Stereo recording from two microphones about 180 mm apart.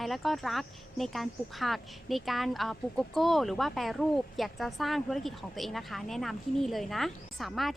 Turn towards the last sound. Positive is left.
turn(degrees=0)  # may be behind; listen again after turning